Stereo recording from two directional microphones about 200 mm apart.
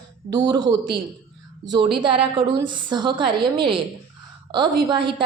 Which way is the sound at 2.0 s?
25° right (ahead or behind).